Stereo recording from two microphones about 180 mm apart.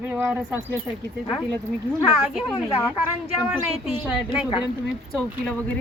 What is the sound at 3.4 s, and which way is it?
A man's voice, 5° right (ahead or behind).